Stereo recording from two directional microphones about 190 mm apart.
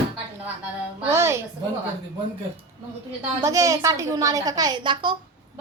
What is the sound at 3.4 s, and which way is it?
A woman's voice, 15° right (ahead or behind).